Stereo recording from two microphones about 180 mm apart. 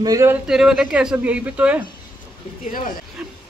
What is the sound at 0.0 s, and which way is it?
Speech, 20° right (ahead or behind).